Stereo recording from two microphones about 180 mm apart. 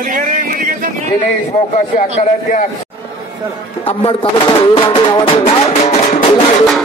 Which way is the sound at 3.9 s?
30° left (ahead or behind).